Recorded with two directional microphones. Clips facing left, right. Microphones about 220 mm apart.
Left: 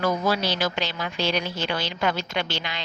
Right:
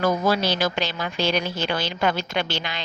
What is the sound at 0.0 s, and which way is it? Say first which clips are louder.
A woman's voice: right 2 dB; 45° right (ahead or behind).